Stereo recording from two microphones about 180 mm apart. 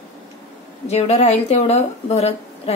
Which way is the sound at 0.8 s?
35° left (ahead or behind).